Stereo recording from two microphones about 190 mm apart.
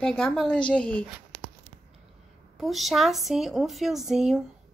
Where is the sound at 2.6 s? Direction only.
Centre (ahead or behind).